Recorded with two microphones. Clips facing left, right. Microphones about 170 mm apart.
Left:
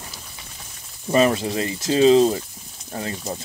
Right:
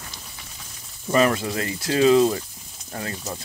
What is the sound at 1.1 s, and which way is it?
Speech, 25° left (ahead or behind).